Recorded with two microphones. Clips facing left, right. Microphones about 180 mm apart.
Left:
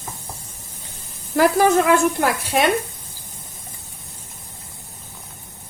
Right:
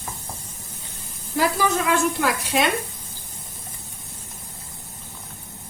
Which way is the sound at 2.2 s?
55° left (ahead or behind).